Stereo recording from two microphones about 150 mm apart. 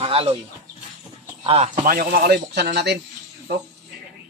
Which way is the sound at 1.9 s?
75° right (ahead or behind).